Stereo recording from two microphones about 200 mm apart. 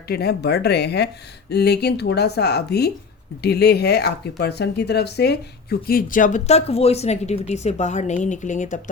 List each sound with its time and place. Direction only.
0.1 s speech: 55° left (ahead or behind)